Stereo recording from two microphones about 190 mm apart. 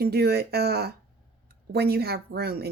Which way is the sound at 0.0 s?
55° right (ahead or behind).